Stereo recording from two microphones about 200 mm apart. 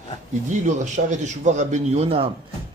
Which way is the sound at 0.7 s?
35° right (ahead or behind).